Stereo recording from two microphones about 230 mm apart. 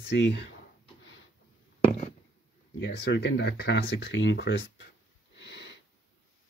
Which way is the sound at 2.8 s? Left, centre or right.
Left.